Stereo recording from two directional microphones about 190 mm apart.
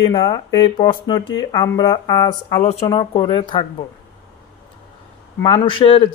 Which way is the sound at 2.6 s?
35° left (ahead or behind).